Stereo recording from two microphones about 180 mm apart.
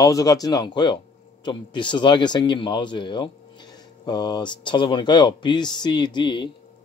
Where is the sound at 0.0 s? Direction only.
20° left (ahead or behind).